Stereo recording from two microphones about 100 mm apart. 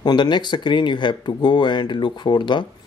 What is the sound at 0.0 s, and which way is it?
Speech, 50° left (ahead or behind).